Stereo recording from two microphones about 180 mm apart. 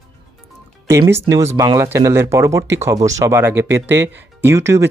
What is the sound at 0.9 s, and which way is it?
Speech, 15° right (ahead or behind).